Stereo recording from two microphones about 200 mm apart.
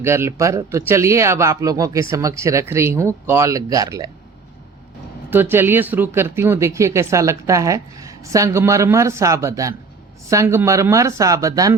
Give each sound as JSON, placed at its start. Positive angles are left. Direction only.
{"t": 0.0, "sound": "speech", "side_deg": -10}
{"t": 5.3, "sound": "speech", "side_deg": -10}